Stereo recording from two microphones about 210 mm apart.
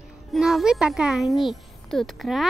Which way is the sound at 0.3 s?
Centre (ahead or behind).